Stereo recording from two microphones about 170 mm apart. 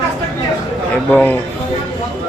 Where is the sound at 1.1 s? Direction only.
10° left (ahead or behind).